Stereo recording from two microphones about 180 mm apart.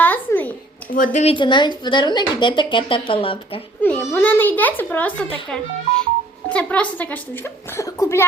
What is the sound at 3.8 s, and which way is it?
A woman's voice, 10° left (ahead or behind).